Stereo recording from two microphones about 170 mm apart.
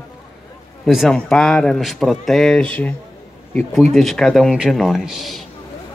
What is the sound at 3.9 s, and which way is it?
A man's voice, centre (ahead or behind).